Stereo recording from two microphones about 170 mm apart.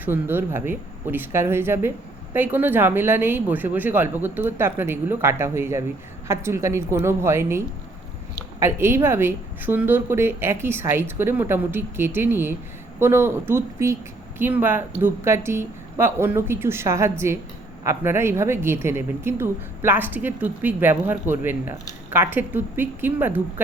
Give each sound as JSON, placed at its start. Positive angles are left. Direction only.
{"t": 0.0, "sound": "speech", "side_deg": -10}